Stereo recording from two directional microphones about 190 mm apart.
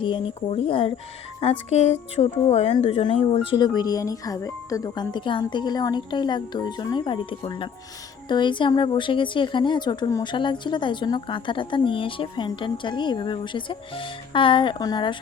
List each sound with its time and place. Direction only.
0.0 s speech: 25° left (ahead or behind)